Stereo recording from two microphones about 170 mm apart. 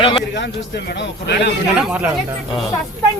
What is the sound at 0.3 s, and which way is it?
A man's voice, 90° left.